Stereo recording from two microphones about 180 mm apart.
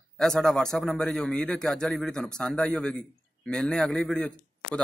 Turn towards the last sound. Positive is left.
turn(degrees=5)  # may be behind; listen again after turning